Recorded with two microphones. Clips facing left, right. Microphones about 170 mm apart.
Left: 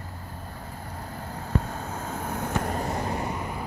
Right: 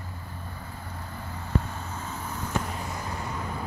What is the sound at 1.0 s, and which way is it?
Vehicle, 50° left (ahead or behind).